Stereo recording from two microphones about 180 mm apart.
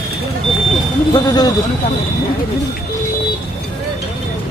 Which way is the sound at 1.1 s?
25° left (ahead or behind).